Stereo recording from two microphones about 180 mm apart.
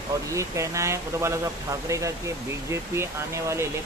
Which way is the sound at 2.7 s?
15° right (ahead or behind).